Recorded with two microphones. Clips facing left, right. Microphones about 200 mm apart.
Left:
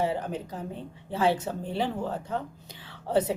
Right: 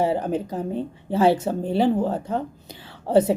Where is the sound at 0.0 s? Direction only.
40° right (ahead or behind).